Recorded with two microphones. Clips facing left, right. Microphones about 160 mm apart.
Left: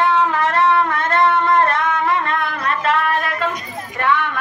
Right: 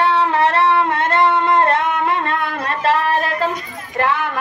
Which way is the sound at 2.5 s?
35° right (ahead or behind).